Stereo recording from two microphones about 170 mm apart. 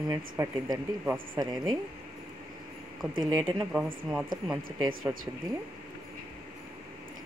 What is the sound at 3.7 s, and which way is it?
Speech, 5° right (ahead or behind).